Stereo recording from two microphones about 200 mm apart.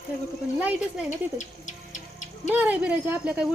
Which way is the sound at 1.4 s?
35° left (ahead or behind).